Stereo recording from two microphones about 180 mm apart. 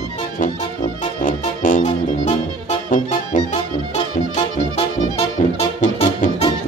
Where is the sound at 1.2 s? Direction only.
50° left (ahead or behind).